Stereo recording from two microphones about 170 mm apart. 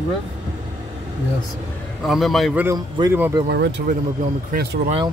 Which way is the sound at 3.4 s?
85° right.